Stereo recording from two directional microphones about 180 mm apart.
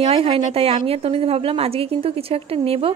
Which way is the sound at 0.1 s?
35° right (ahead or behind).